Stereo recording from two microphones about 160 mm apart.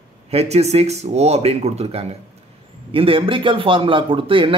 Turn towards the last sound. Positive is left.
turn(degrees=-35)  # may be behind; listen again after turning